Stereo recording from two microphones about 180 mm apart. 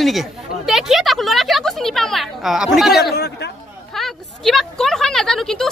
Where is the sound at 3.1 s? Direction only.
60° left (ahead or behind).